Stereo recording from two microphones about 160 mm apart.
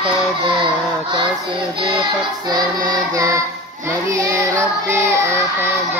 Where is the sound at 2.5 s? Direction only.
25° right (ahead or behind).